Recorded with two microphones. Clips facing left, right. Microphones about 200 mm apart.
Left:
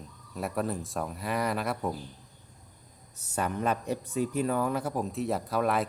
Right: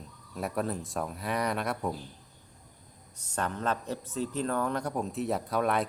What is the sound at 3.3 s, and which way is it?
Speech, 10° left (ahead or behind).